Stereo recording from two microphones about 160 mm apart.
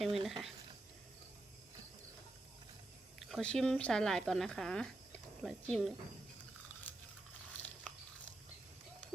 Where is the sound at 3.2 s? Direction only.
5° left (ahead or behind).